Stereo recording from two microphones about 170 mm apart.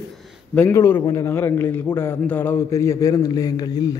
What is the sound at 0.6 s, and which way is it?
A man's voice, 10° left (ahead or behind).